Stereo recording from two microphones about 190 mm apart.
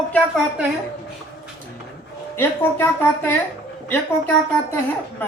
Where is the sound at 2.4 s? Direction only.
15° left (ahead or behind).